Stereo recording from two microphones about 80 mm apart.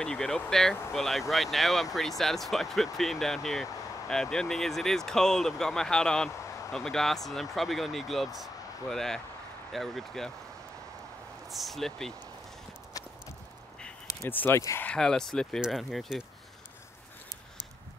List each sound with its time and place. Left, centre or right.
0.0 s speech: centre
11.5 s speech: centre
13.7 s a sound: centre
14.3 s speech: left
15.0 s speech: centre